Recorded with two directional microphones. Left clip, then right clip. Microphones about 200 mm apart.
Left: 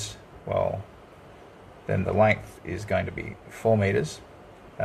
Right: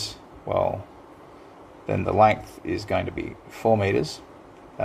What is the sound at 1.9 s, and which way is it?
Speech, 40° right (ahead or behind).